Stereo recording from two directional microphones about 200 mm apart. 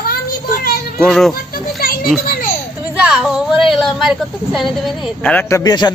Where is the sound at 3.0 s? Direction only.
5° right (ahead or behind).